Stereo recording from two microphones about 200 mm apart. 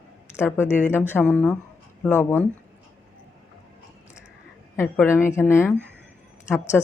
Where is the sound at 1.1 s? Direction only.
5° left (ahead or behind).